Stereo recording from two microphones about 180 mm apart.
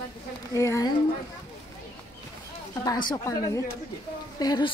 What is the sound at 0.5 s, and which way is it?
Speech, 15° left (ahead or behind).